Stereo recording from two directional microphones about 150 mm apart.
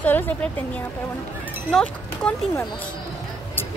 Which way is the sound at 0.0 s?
10° left (ahead or behind).